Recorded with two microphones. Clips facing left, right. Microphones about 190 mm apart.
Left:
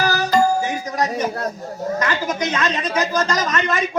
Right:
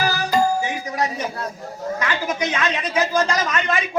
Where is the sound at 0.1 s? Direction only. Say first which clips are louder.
Left 2 dB; 40° left (ahead or behind).